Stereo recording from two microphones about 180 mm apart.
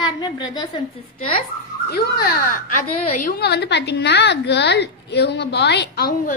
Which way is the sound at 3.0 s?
45° left (ahead or behind).